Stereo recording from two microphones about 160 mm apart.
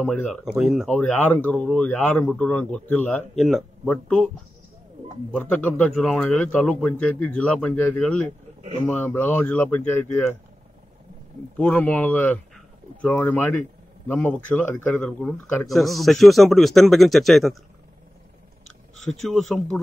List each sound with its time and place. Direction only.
0.0 s a man's voice: 10° left (ahead or behind)
0.6 s speech: 5° right (ahead or behind)
0.9 s a man's voice: 10° left (ahead or behind)
3.3 s speech: centre (ahead or behind)
5.3 s a man's voice: 10° left (ahead or behind)
11.5 s a man's voice: 10° left (ahead or behind)
19.0 s speech: centre (ahead or behind)